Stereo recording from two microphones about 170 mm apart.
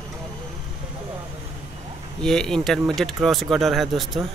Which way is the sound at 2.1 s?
5° left (ahead or behind).